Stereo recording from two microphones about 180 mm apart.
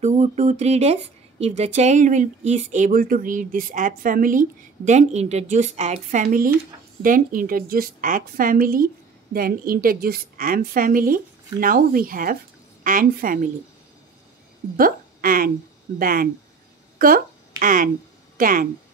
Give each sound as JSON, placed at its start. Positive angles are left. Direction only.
{"t": 0.0, "sound": "a sound", "side_deg": -40}
{"t": 1.4, "sound": "speech", "side_deg": -40}
{"t": 14.8, "sound": "a woman's voice", "side_deg": -50}